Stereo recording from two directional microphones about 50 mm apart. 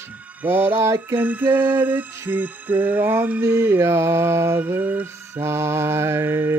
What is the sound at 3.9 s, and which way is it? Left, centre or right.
Mantra, right.